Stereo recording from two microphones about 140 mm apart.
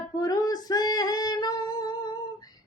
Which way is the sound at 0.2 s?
25° left (ahead or behind).